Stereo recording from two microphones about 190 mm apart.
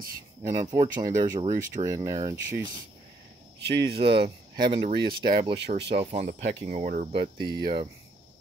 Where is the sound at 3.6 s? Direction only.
60° right (ahead or behind).